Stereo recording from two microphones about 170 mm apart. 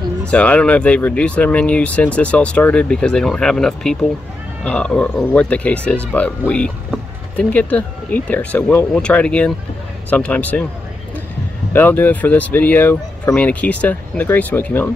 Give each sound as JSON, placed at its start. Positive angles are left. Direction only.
{"t": 0.3, "sound": "speech", "side_deg": 5}
{"t": 11.7, "sound": "speech", "side_deg": 10}